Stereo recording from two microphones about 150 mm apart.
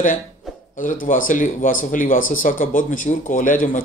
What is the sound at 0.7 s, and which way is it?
Speech, 60° left (ahead or behind).